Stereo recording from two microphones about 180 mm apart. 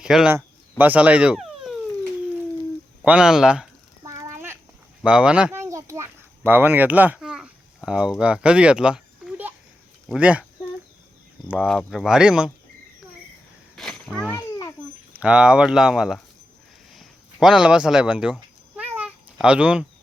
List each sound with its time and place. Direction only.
0.0 s speech: 5° right (ahead or behind)
0.3 s insect: 10° right (ahead or behind)
3.0 s speech: 5° right (ahead or behind)
4.0 s a sound: 20° right (ahead or behind)
5.0 s a sound: 5° right (ahead or behind)
7.9 s speech: 5° right (ahead or behind)
11.4 s speech: 10° right (ahead or behind)
13.7 s cat: centre (ahead or behind)
15.1 s speech: 5° right (ahead or behind)
18.8 s cat: 5° right (ahead or behind)